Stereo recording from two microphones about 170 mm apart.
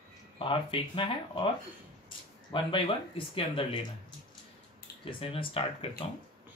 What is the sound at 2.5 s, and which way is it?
Speech, 30° left (ahead or behind).